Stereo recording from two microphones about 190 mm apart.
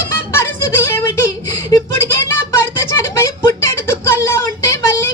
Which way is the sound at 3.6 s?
15° left (ahead or behind).